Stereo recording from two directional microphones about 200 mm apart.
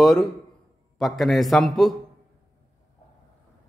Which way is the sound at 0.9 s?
Centre (ahead or behind).